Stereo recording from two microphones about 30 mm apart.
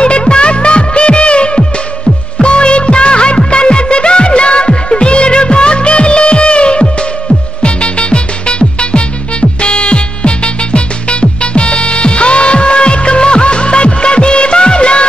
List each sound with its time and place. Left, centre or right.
0.0 s music: left
2.4 s music of bollywood: left
7.6 s music: left